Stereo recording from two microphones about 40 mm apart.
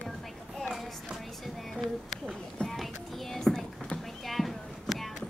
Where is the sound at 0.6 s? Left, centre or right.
Centre.